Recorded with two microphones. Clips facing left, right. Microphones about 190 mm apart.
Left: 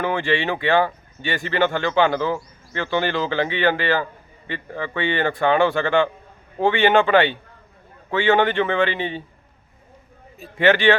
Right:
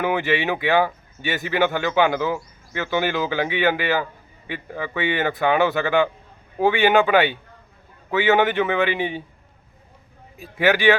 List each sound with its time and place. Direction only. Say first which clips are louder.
0.0 s a man's voice: even; 5° right (ahead or behind)
10.4 s speech: left 1 dB; 10° right (ahead or behind)